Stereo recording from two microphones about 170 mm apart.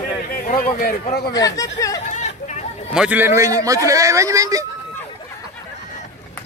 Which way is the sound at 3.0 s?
10° right (ahead or behind).